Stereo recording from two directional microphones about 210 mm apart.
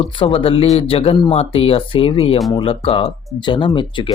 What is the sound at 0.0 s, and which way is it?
Speech, 25° left (ahead or behind).